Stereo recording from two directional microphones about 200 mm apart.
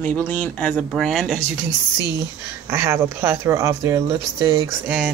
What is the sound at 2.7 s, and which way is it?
Speech, 10° right (ahead or behind).